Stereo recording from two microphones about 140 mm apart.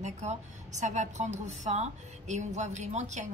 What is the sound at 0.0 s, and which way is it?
A woman's voice, 55° right (ahead or behind).